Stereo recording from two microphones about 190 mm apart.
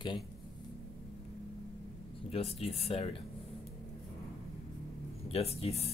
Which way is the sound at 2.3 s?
30° left (ahead or behind).